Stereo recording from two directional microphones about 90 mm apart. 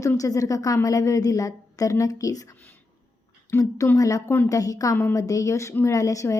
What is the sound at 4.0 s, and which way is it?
A woman's voice, 40° left (ahead or behind).